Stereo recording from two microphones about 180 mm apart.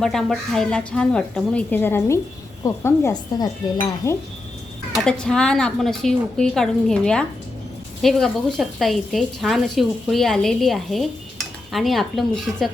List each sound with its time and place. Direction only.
0.0 s speech: centre (ahead or behind)
2.6 s dishes: 15° left (ahead or behind)
4.9 s speech: 5° left (ahead or behind)